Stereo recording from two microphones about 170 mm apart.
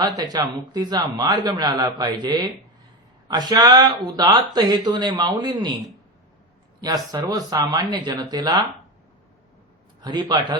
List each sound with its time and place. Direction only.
0.2 s speech: 20° right (ahead or behind)
6.8 s speech: 20° right (ahead or behind)
10.0 s speech: 25° right (ahead or behind)